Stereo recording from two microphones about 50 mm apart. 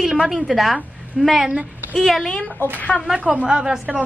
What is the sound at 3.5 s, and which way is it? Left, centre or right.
Speech, centre.